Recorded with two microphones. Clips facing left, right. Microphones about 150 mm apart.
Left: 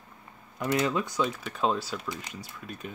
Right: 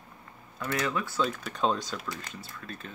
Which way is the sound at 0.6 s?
20° left (ahead or behind).